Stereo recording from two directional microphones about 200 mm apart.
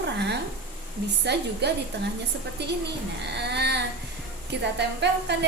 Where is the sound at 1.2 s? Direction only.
55° right (ahead or behind).